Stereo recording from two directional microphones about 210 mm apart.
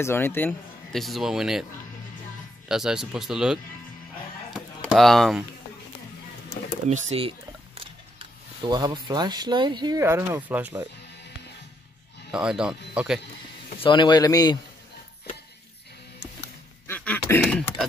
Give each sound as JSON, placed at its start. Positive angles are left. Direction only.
{"t": 0.0, "sound": "speech", "side_deg": 10}
{"t": 2.7, "sound": "speech", "side_deg": 0}
{"t": 4.6, "sound": "a sound", "side_deg": 0}
{"t": 6.9, "sound": "speech", "side_deg": -30}
{"t": 8.6, "sound": "speech", "side_deg": -20}
{"t": 12.3, "sound": "speech", "side_deg": -5}
{"t": 13.7, "sound": "speech", "side_deg": 25}
{"t": 16.8, "sound": "a sound", "side_deg": 10}